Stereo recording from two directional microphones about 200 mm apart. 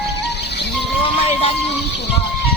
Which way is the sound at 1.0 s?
30° left (ahead or behind).